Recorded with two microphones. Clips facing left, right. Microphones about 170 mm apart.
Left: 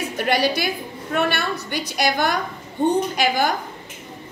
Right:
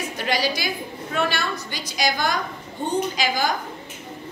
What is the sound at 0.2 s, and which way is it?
A woman's voice, 60° left (ahead or behind).